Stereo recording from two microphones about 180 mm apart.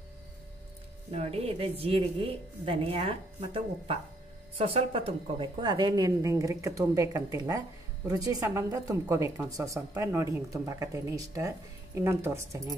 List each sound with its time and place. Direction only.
1.1 s a woman's voice: 35° right (ahead or behind); by 12.7 s 15° right (ahead or behind)